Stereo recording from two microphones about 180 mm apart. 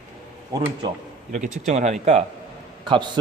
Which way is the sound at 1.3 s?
40° right (ahead or behind).